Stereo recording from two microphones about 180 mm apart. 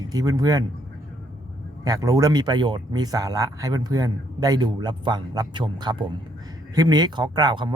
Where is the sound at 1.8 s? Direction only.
20° right (ahead or behind).